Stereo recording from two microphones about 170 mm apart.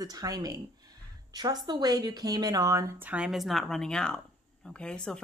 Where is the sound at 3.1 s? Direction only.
5° right (ahead or behind).